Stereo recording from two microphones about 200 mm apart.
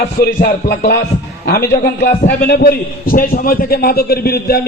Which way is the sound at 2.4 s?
50° left (ahead or behind).